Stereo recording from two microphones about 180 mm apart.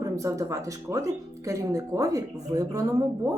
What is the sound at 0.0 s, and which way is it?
Speech, 20° right (ahead or behind).